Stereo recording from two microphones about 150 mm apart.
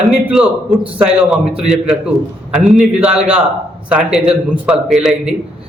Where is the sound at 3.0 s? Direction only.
10° right (ahead or behind).